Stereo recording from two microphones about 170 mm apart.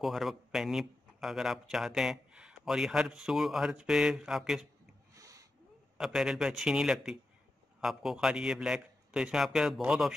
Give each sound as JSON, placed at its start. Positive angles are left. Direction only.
{"t": 0.0, "sound": "speech", "side_deg": 0}
{"t": 5.1, "sound": "a sound", "side_deg": -20}
{"t": 5.9, "sound": "speech", "side_deg": 0}